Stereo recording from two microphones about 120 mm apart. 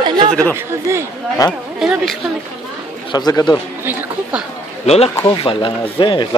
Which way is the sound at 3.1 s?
35° left (ahead or behind).